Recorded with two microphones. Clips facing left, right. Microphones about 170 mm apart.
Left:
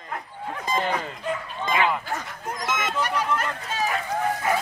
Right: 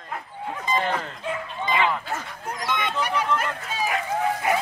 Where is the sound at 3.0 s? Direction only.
10° right (ahead or behind).